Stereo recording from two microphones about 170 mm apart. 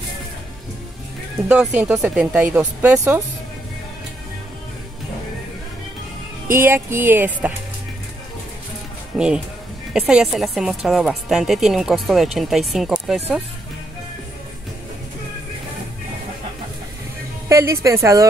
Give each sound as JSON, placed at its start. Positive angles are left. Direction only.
{"t": 1.5, "sound": "speech", "side_deg": -10}
{"t": 6.4, "sound": "speech", "side_deg": -15}
{"t": 9.9, "sound": "a woman's voice", "side_deg": -5}
{"t": 17.5, "sound": "speech", "side_deg": -15}